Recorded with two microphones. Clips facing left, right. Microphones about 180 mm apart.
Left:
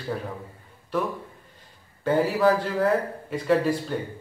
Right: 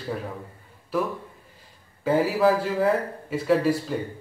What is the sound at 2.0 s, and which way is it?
Speech, 5° right (ahead or behind).